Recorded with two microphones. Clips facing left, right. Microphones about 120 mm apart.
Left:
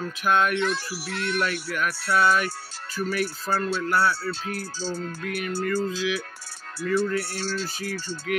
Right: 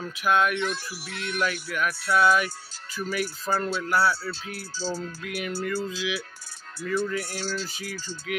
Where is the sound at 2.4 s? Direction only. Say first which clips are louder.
Left 4 dB; 60° left (ahead or behind).